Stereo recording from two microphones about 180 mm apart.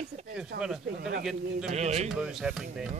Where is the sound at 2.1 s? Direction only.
5° right (ahead or behind).